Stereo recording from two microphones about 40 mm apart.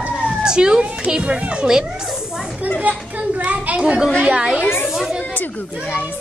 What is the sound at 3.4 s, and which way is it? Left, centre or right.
Speech, right.